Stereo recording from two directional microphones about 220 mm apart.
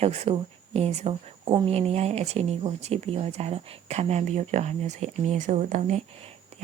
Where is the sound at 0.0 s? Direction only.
30° right (ahead or behind).